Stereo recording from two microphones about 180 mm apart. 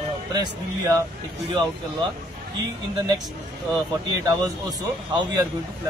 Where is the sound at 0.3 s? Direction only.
25° right (ahead or behind).